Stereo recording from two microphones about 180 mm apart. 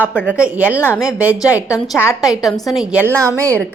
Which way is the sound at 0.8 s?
10° left (ahead or behind).